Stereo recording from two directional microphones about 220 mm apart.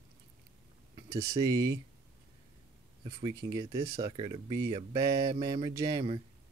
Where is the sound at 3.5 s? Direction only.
15° right (ahead or behind).